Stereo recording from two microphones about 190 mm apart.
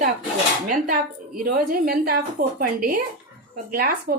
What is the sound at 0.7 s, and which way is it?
A woman's voice, 45° right (ahead or behind).